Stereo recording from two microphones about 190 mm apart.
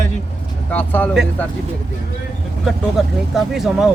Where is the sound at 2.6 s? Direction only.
Centre (ahead or behind).